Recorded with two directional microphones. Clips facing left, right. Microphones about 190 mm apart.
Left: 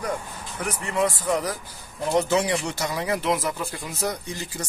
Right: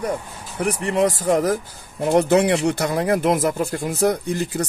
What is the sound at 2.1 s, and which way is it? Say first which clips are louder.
Speech: right 6 dB; 60° right (ahead or behind).